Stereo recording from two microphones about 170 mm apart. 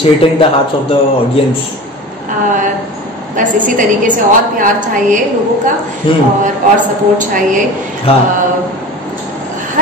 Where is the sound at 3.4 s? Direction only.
50° right (ahead or behind).